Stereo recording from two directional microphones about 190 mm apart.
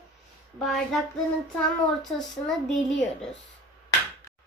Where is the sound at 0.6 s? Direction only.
Centre (ahead or behind).